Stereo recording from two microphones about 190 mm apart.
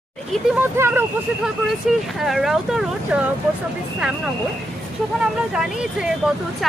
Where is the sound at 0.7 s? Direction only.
10° right (ahead or behind).